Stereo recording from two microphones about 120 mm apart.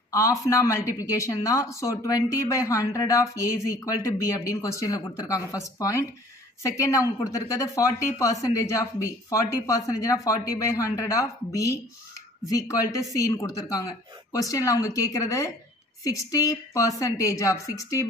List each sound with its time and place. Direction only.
0.1 s speech: 25° left (ahead or behind)